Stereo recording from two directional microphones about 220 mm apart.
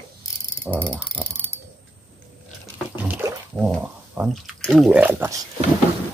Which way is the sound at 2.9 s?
10° right (ahead or behind).